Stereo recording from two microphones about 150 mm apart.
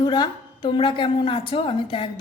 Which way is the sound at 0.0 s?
30° left (ahead or behind).